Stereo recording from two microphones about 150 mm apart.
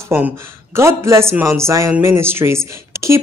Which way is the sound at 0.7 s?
20° right (ahead or behind).